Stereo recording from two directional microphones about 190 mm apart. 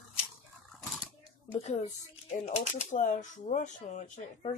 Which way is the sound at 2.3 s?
35° left (ahead or behind).